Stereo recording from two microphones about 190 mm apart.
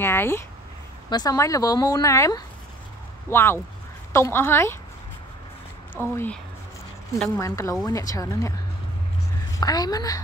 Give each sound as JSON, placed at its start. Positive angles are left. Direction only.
{"t": 0.0, "sound": "speech", "side_deg": 10}
{"t": 6.0, "sound": "speech", "side_deg": 10}
{"t": 7.3, "sound": "speech", "side_deg": 15}
{"t": 9.6, "sound": "speech", "side_deg": 20}